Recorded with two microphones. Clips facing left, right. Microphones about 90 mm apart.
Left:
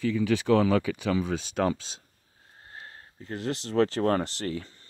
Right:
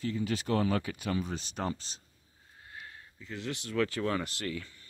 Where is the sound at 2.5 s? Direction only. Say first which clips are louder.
Left 2 dB; 40° left (ahead or behind).